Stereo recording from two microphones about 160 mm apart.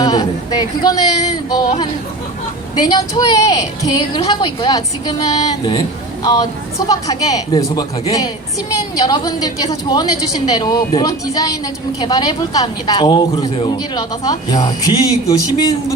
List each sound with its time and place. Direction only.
0.0 s speech: 25° left (ahead or behind)
2.7 s speech: 25° left (ahead or behind)